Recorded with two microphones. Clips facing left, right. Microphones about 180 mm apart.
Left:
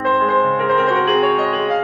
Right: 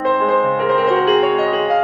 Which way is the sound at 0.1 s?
5° right (ahead or behind).